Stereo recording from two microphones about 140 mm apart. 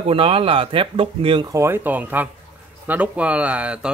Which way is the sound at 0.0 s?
40° right (ahead or behind).